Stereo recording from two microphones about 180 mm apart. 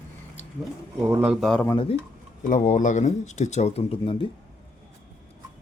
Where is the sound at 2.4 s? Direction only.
45° left (ahead or behind); by 4.3 s 30° left (ahead or behind).